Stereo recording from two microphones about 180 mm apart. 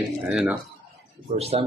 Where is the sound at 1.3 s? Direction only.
35° right (ahead or behind).